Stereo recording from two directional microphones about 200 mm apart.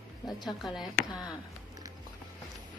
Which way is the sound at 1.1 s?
20° left (ahead or behind).